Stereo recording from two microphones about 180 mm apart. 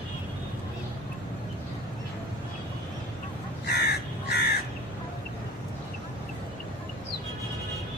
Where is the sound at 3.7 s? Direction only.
65° left (ahead or behind).